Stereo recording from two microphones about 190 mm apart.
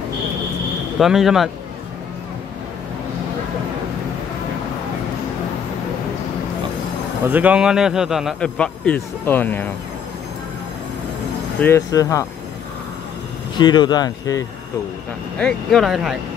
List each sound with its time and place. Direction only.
0.9 s a man's voice: centre (ahead or behind)
7.2 s a man's voice: 10° right (ahead or behind); by 9.7 s 10° left (ahead or behind)
11.6 s speech: 15° left (ahead or behind)
13.6 s speech: 25° left (ahead or behind)
15.3 s a man's voice: 5° left (ahead or behind)